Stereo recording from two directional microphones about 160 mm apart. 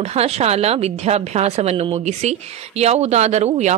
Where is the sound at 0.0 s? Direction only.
40° right (ahead or behind).